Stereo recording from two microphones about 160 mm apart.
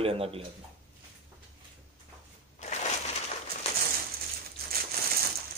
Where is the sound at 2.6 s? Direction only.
45° left (ahead or behind).